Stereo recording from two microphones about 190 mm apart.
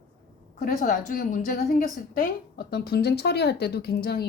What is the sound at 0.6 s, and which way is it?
Speech, 45° left (ahead or behind).